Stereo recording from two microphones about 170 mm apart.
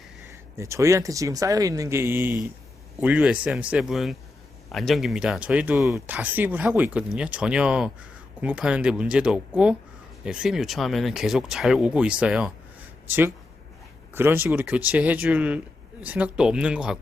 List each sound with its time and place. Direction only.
0.5 s speech: 15° right (ahead or behind)